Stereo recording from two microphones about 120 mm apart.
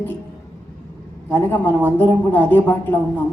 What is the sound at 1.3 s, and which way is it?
Speech, 15° left (ahead or behind).